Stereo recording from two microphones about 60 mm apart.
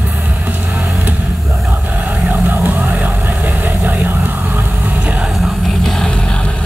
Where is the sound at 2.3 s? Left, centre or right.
Right.